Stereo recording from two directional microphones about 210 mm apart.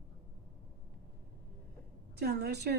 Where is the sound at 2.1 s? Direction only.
50° right (ahead or behind).